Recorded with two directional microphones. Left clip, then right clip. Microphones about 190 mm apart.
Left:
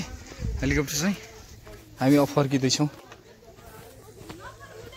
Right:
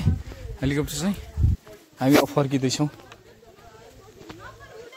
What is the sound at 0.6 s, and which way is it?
Speech, 15° right (ahead or behind).